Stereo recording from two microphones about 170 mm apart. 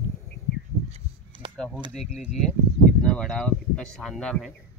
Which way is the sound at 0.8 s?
35° right (ahead or behind).